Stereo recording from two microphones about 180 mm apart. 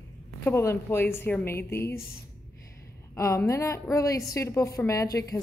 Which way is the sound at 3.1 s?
15° left (ahead or behind).